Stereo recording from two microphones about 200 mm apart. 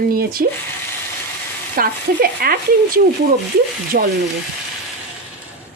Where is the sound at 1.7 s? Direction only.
45° right (ahead or behind).